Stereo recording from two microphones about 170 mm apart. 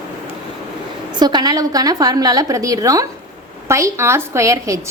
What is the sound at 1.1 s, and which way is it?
A woman's voice, 25° right (ahead or behind).